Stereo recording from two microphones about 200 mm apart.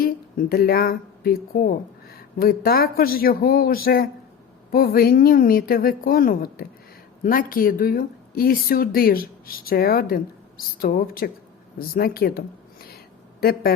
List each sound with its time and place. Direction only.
0.0 s speech: 50° left (ahead or behind)
13.4 s speech: 50° left (ahead or behind)